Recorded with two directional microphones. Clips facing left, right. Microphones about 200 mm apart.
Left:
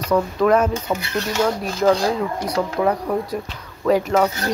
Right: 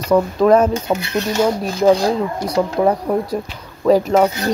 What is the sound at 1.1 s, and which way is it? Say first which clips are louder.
Speech: right 3 dB; 15° right (ahead or behind).